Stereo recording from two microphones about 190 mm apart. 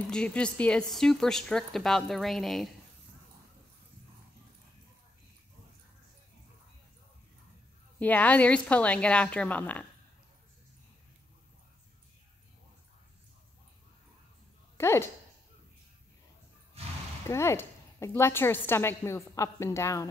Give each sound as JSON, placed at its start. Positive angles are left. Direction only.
{"t": 0.1, "sound": "speech", "side_deg": 5}
{"t": 8.0, "sound": "a woman's voice", "side_deg": 10}
{"t": 14.8, "sound": "speech", "side_deg": 15}
{"t": 16.8, "sound": "a sound", "side_deg": -30}
{"t": 17.3, "sound": "a woman's voice", "side_deg": 15}